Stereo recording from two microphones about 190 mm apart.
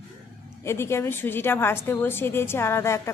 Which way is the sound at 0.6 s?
15° left (ahead or behind).